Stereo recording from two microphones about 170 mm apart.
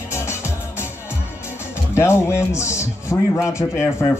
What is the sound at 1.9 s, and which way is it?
A man's voice, 15° left (ahead or behind).